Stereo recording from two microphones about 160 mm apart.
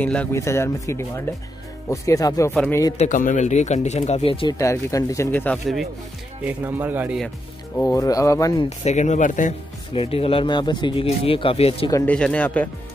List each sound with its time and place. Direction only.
0.0 s speech: 10° left (ahead or behind)
2.5 s speech: 10° left (ahead or behind)
3.0 s speech: 55° left (ahead or behind); by 4.6 s 35° left (ahead or behind)
4.6 s speech: 20° left (ahead or behind)
6.4 s speech: 15° right (ahead or behind)
7.7 s speech: 20° left (ahead or behind)
8.6 s speech: 45° left (ahead or behind)
9.9 s speech: 35° left (ahead or behind)
12.1 s speech: 10° left (ahead or behind)